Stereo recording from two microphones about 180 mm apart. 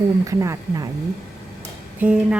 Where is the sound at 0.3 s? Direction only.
15° right (ahead or behind).